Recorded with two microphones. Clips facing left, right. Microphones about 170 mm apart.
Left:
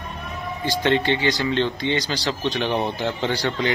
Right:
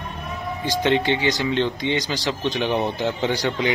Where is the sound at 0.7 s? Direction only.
15° right (ahead or behind).